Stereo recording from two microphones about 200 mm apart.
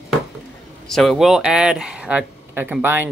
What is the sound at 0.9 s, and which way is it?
Speech, centre (ahead or behind).